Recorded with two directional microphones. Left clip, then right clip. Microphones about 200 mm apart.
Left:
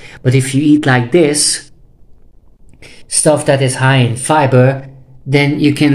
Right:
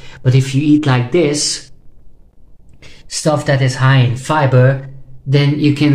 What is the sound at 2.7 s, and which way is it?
Speech, 20° left (ahead or behind).